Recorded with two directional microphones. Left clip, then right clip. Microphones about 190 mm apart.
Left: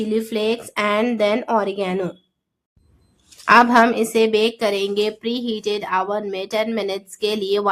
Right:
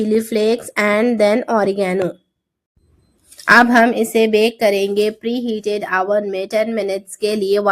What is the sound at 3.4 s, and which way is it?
A woman's voice, 20° right (ahead or behind).